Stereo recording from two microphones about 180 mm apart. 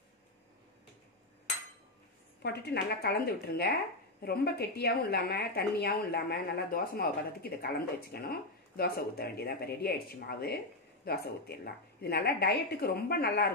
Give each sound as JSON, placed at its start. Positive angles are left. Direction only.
{"t": 2.4, "sound": "speech", "side_deg": 65}